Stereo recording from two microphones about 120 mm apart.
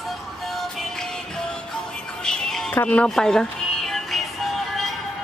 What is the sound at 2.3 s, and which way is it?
Music, 5° left (ahead or behind).